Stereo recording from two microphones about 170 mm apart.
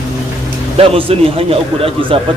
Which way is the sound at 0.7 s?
35° right (ahead or behind).